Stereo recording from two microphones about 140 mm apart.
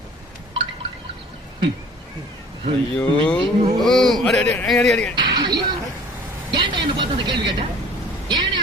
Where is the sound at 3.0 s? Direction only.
10° left (ahead or behind).